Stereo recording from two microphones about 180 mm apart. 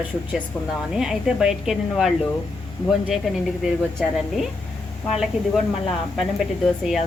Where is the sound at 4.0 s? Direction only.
Centre (ahead or behind).